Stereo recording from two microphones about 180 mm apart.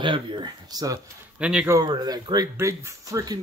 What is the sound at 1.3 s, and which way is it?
Speech, 5° right (ahead or behind).